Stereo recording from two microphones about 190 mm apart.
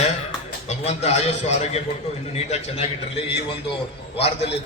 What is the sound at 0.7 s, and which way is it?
A man's voice, 35° left (ahead or behind).